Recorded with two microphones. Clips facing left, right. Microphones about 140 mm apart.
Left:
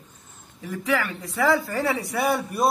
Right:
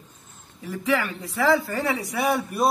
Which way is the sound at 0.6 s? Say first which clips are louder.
Right 1 dB; centre (ahead or behind).